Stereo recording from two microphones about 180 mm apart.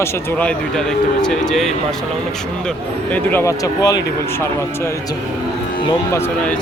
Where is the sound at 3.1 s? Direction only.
10° left (ahead or behind).